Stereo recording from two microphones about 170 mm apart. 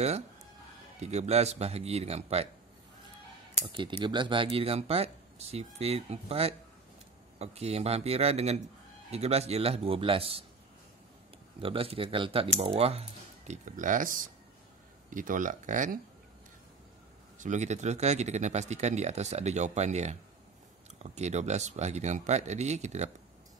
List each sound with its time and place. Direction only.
0.9 s speech: 40° right (ahead or behind)
3.6 s speech: 30° right (ahead or behind)
11.6 s speech: 35° right (ahead or behind); by 16.0 s 50° right (ahead or behind)
17.4 s speech: 45° right (ahead or behind)